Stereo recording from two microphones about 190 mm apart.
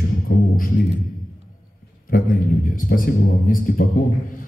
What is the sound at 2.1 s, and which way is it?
A man's voice, 50° left (ahead or behind).